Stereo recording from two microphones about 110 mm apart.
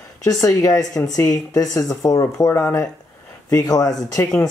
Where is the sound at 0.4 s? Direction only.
30° left (ahead or behind).